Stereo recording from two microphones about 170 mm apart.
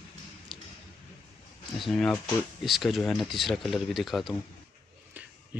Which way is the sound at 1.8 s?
Centre (ahead or behind).